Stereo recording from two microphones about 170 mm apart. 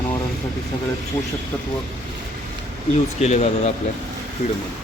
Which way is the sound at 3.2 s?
40° left (ahead or behind).